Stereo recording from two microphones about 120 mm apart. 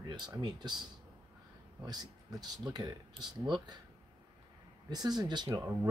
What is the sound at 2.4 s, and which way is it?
Speech, 35° right (ahead or behind).